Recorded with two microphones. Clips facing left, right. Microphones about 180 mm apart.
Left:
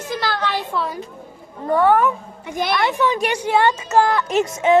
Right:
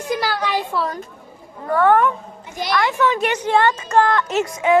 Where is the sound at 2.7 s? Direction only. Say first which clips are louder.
Right 1 dB; 20° left (ahead or behind).